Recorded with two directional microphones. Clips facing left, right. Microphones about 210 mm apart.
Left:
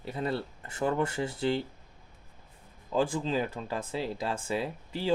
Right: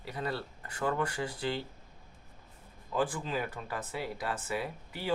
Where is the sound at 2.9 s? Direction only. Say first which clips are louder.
Left 4 dB; 25° left (ahead or behind).